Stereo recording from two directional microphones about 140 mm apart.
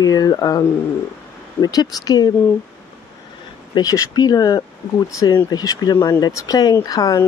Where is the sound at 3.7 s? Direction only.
25° left (ahead or behind).